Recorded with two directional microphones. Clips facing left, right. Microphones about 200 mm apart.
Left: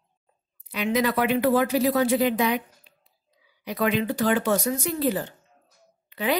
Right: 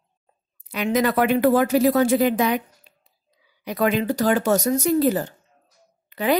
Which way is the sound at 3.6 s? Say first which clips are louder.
Right 3 dB; 45° right (ahead or behind).